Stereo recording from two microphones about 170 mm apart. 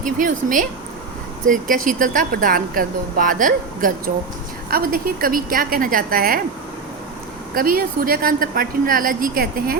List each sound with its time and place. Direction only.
0.0 s speech: 50° right (ahead or behind)
7.5 s speech: 60° right (ahead or behind)